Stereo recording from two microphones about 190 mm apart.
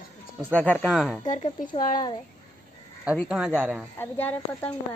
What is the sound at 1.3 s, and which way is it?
Speech, 40° left (ahead or behind).